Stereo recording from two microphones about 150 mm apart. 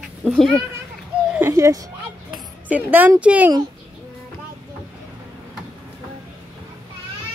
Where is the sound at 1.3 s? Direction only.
20° right (ahead or behind).